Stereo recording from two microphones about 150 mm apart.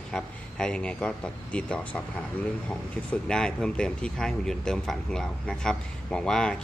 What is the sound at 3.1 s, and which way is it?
Speech, 5° left (ahead or behind).